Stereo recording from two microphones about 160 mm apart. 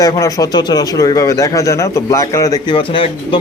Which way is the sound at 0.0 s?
20° left (ahead or behind).